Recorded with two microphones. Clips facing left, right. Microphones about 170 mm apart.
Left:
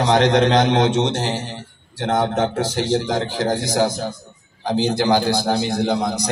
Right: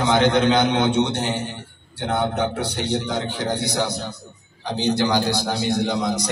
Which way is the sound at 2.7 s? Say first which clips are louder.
Left 4 dB; 90° left.